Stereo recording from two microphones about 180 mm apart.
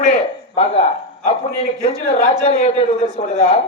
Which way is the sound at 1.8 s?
35° left (ahead or behind).